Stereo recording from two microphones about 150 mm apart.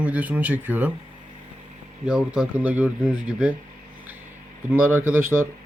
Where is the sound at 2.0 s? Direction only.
5° right (ahead or behind).